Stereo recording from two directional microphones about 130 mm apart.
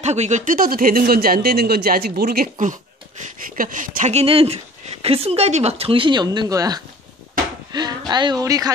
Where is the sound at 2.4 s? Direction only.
85° right.